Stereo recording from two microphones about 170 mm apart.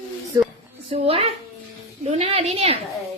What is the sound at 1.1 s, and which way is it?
A woman's voice, 35° right (ahead or behind).